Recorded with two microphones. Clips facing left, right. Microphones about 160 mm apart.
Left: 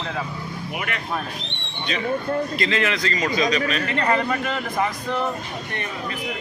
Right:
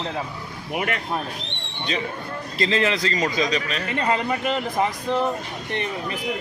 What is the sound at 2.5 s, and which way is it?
Speech, 30° right (ahead or behind).